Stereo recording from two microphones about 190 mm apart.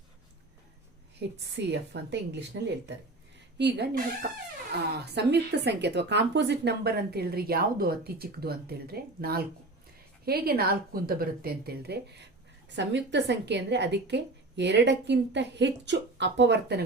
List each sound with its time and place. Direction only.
1.4 s speech: 65° right (ahead or behind)
5.1 s a woman's voice: 60° right (ahead or behind)